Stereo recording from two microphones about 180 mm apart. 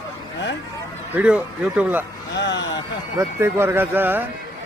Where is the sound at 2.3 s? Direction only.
80° left.